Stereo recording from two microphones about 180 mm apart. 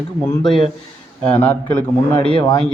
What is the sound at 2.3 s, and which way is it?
Speech, 20° left (ahead or behind).